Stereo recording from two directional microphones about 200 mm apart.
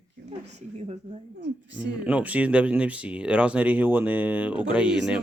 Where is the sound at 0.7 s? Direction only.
30° right (ahead or behind).